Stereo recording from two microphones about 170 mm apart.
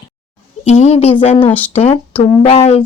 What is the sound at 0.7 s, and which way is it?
A woman's voice, 40° left (ahead or behind).